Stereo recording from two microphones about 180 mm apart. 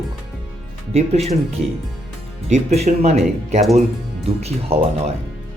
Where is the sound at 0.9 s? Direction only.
35° right (ahead or behind).